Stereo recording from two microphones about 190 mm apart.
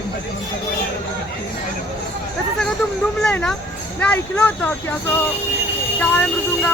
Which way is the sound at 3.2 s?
5° left (ahead or behind).